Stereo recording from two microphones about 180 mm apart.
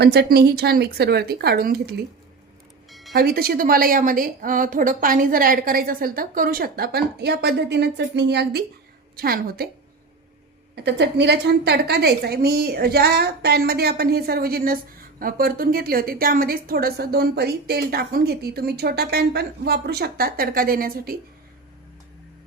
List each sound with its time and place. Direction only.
0.0 s a woman's voice: 65° right (ahead or behind)
3.2 s a woman's voice: 55° right (ahead or behind)
10.8 s a woman's voice: 70° right (ahead or behind); by 21.2 s 55° right (ahead or behind)